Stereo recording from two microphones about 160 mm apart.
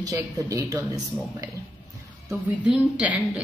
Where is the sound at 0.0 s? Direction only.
20° right (ahead or behind).